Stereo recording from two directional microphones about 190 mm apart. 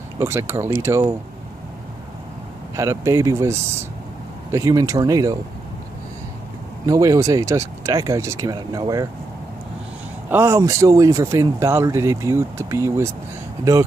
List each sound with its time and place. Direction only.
0.2 s speech: 15° right (ahead or behind)
2.7 s speech: 15° right (ahead or behind)
6.9 s speech: 15° right (ahead or behind)
10.3 s speech: 15° right (ahead or behind)